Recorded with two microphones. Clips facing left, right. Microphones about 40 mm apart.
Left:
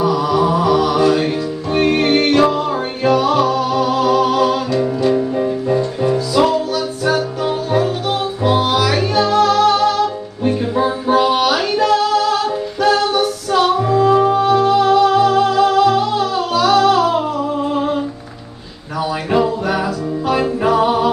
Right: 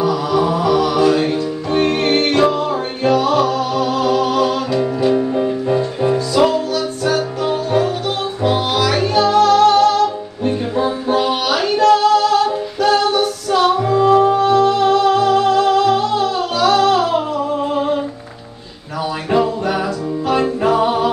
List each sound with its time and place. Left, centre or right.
0.0 s mantra: centre
1.3 s music: centre
5.3 s music: centre
6.1 s music: centre
19.3 s music: centre